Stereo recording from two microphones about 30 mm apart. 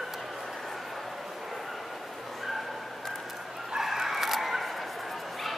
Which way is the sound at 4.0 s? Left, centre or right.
Centre.